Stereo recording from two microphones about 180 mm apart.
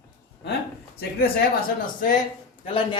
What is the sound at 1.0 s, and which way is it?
Speech, 60° left (ahead or behind).